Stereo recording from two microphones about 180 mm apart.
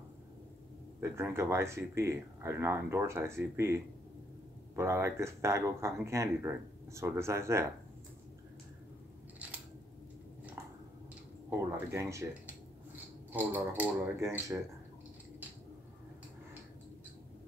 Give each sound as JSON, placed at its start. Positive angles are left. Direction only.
{"t": 1.0, "sound": "speech", "side_deg": -15}
{"t": 9.4, "sound": "scissors", "side_deg": -5}
{"t": 11.7, "sound": "speech", "side_deg": -15}